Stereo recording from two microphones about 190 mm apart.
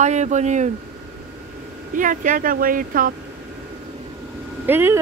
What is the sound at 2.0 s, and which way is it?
Speech, 45° right (ahead or behind).